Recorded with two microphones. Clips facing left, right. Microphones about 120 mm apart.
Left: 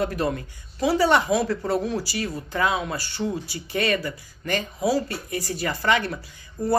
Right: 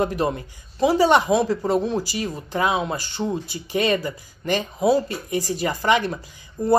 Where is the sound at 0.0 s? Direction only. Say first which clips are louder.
Right 3 dB; 25° right (ahead or behind).